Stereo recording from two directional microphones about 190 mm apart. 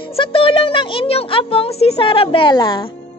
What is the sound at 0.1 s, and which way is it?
A woman's voice, 30° left (ahead or behind).